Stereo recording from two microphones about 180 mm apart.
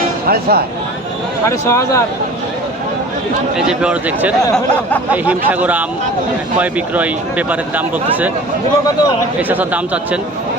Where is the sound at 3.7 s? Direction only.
5° right (ahead or behind).